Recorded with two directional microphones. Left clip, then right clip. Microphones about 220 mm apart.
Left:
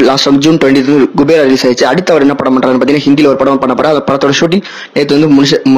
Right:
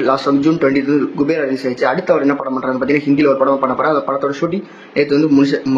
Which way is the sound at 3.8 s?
45° left (ahead or behind).